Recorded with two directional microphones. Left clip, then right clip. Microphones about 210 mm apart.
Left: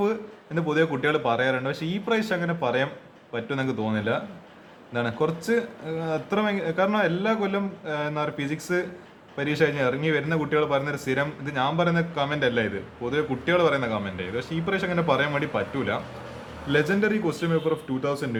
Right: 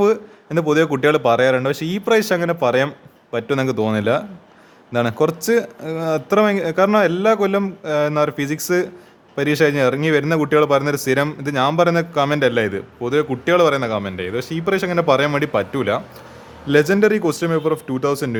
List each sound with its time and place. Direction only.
0.0 s a man's voice: 50° right (ahead or behind)